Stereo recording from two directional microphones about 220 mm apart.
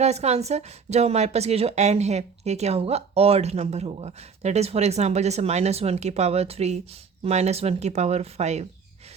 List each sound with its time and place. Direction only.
0.0 s a woman's voice: 30° right (ahead or behind)